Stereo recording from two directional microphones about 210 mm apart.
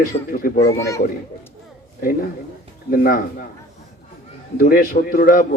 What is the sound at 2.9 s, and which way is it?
Speech, 45° left (ahead or behind).